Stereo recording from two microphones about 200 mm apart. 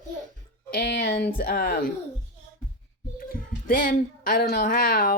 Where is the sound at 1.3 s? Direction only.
50° left (ahead or behind).